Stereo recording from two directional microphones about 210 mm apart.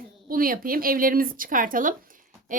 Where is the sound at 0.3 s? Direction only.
45° right (ahead or behind).